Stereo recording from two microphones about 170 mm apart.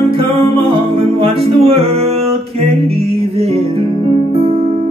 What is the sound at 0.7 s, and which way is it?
Music, 30° right (ahead or behind).